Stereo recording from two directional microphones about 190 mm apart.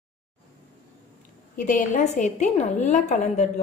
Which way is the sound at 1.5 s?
40° left (ahead or behind).